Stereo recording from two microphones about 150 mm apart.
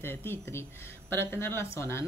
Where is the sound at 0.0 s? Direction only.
15° left (ahead or behind).